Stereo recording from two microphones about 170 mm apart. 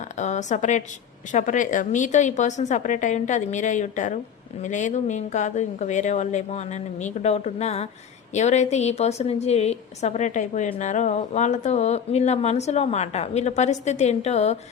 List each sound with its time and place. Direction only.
0.2 s a woman's voice: 45° left (ahead or behind)